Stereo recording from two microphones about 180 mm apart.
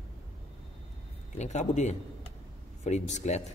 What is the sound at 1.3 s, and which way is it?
Speech, 40° left (ahead or behind).